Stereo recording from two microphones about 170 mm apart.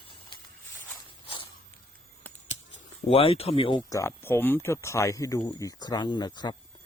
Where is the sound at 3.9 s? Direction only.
15° left (ahead or behind).